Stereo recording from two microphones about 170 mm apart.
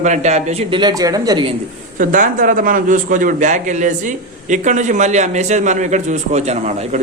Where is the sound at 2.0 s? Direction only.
50° right (ahead or behind).